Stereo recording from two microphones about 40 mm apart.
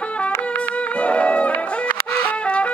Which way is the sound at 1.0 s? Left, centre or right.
Left.